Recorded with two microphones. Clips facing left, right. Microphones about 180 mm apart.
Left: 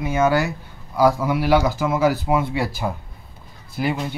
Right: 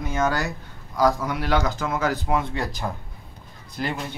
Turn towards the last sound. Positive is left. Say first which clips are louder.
# left 5 dB
turn(degrees=5)  # may be behind; listen again after turning